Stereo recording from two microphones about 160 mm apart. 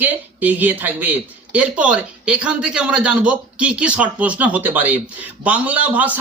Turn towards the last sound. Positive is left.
turn(degrees=-10)  # may be behind; listen again after turning